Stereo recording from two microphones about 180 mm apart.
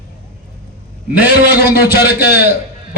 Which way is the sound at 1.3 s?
60° left (ahead or behind).